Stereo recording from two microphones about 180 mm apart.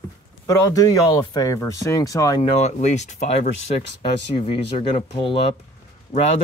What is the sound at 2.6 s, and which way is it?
Speech, 40° left (ahead or behind).